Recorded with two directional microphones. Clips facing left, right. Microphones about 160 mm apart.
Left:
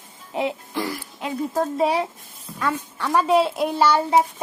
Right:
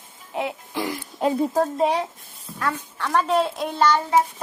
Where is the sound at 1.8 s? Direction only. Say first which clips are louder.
Left 1 dB; 5° left (ahead or behind).